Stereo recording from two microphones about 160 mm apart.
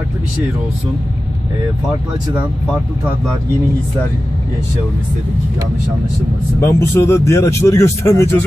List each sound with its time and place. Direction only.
6.6 s speech: 15° left (ahead or behind)